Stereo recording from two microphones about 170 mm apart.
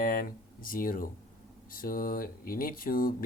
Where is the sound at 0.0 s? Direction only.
60° left (ahead or behind).